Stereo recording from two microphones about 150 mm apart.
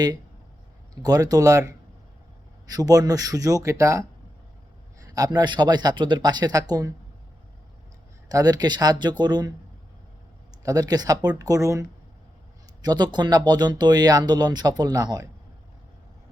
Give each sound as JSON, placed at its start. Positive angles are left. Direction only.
{"t": 1.0, "sound": "speech", "side_deg": -25}
{"t": 5.0, "sound": "speech", "side_deg": -25}
{"t": 8.3, "sound": "speech", "side_deg": -25}
{"t": 10.6, "sound": "speech", "side_deg": -25}